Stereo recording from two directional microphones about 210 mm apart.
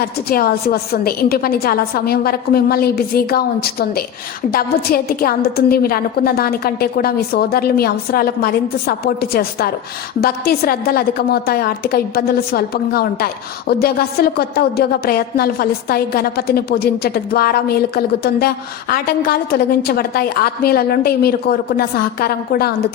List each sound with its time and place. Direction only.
0.0 s a woman's voice: 45° left (ahead or behind)